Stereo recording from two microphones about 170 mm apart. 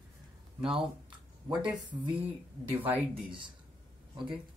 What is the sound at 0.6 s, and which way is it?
Speech, 5° right (ahead or behind).